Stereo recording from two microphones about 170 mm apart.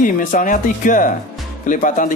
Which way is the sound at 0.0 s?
50° left (ahead or behind).